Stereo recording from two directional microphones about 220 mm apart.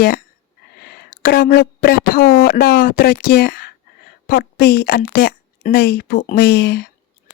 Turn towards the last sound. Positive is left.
turn(degrees=50)  # may be behind; listen again after turning